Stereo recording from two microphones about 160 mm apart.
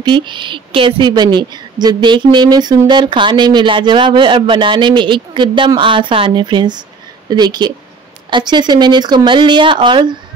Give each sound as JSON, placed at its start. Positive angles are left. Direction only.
{"t": 0.0, "sound": "a woman's voice", "side_deg": -30}